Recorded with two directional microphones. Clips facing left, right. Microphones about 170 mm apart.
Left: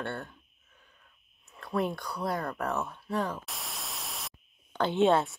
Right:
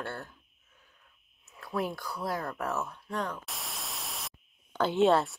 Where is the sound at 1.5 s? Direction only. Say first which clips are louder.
Left 2 dB; centre (ahead or behind).